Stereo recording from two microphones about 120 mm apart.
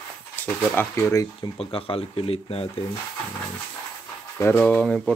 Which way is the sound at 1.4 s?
45° left (ahead or behind).